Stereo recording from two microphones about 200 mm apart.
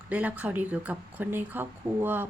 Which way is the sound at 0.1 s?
10° right (ahead or behind).